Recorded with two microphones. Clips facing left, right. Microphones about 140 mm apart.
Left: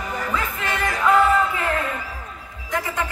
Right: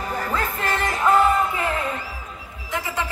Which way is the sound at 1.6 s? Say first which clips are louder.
Left 1 dB; 20° right (ahead or behind).